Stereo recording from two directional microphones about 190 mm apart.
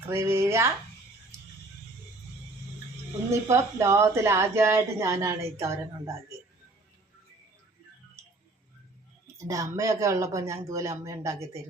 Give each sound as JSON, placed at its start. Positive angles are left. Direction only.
{"t": 0.1, "sound": "speech", "side_deg": -15}
{"t": 3.4, "sound": "speech", "side_deg": -15}
{"t": 9.2, "sound": "speech", "side_deg": -15}